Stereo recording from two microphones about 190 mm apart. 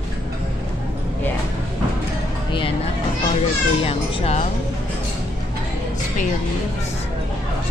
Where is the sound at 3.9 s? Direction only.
30° left (ahead or behind).